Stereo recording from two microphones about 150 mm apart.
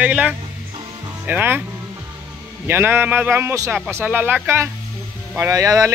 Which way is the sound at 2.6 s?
15° right (ahead or behind).